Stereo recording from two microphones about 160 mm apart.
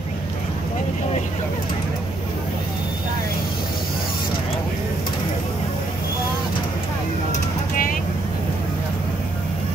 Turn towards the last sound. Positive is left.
turn(degrees=60)  # may be behind; listen again after turning